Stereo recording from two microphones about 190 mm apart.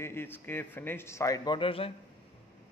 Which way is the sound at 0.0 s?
10° left (ahead or behind).